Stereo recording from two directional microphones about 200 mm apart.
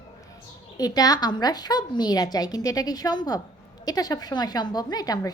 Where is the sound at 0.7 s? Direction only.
20° left (ahead or behind).